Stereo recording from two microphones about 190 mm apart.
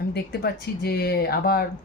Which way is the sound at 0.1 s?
55° left (ahead or behind).